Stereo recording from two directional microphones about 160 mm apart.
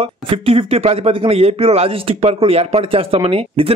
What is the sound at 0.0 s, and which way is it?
Speech, 35° right (ahead or behind).